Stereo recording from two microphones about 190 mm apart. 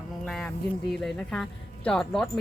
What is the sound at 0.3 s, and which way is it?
Speech, centre (ahead or behind).